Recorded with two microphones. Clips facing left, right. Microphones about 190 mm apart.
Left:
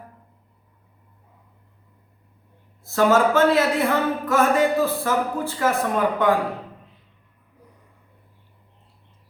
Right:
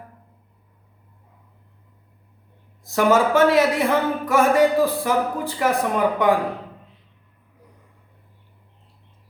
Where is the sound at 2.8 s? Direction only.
15° right (ahead or behind).